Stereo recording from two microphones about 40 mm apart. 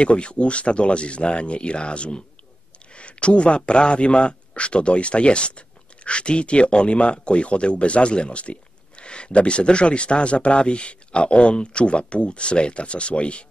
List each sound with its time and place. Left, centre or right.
0.0 s speech: left